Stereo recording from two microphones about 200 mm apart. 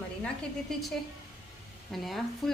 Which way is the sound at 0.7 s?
Centre (ahead or behind).